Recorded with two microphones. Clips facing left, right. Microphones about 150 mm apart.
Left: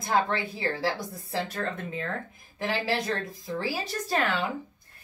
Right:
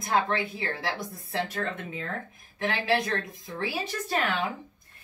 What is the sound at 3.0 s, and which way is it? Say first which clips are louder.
Speech: even; 30° left (ahead or behind).